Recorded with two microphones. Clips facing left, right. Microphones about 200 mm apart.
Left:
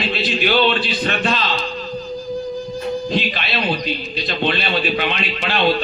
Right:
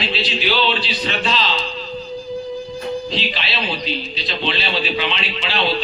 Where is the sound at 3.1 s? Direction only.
50° left (ahead or behind).